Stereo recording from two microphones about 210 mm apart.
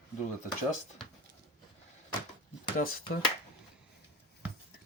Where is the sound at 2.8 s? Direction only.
45° left (ahead or behind).